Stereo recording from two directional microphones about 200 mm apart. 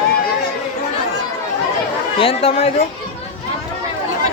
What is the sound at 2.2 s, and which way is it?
Speech, 30° left (ahead or behind).